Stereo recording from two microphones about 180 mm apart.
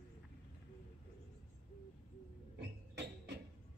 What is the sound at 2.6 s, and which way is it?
Music, 70° right (ahead or behind).